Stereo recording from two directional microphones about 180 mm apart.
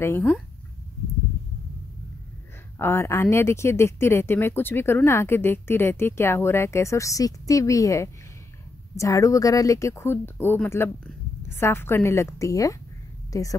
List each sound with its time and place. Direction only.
0.0 s speech: 10° left (ahead or behind)
2.8 s a woman's voice: 15° left (ahead or behind)